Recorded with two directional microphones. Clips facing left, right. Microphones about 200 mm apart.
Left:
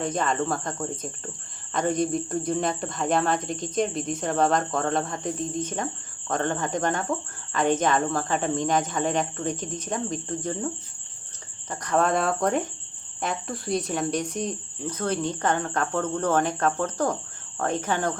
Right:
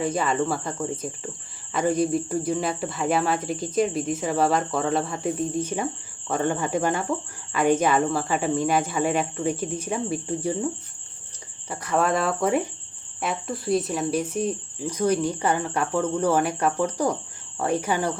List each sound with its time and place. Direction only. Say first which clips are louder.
0.0 s cricket: right 2 dB; 5° right (ahead or behind)
1.7 s speech: right 2 dB; 5° right (ahead or behind)
11.7 s cricket: even; 5° right (ahead or behind)
13.2 s speech: right 3 dB; centre (ahead or behind)